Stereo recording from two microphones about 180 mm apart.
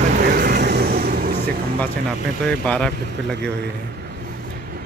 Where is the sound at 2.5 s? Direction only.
5° left (ahead or behind).